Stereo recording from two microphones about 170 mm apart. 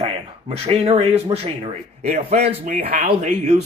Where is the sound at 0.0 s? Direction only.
35° right (ahead or behind).